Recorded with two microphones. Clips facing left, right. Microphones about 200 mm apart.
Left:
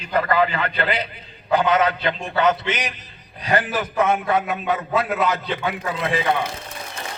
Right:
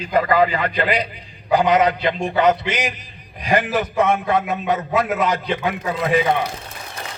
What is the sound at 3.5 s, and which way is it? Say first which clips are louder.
Speech: right 3 dB; 20° right (ahead or behind).